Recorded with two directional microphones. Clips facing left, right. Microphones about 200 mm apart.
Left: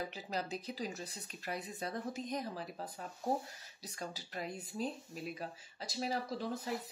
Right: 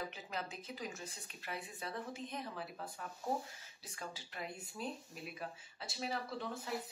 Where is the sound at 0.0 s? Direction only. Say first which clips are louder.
Left 4 dB; 35° left (ahead or behind).